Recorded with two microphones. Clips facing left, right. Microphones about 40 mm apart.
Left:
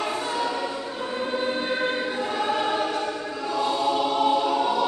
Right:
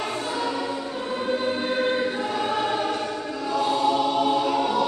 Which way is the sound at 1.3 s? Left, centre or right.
Centre.